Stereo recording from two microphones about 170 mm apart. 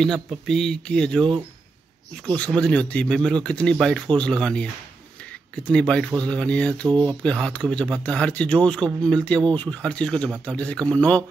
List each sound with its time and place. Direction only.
0.0 s speech: centre (ahead or behind)
6.9 s speech: 25° right (ahead or behind)
7.2 s speech: 5° left (ahead or behind)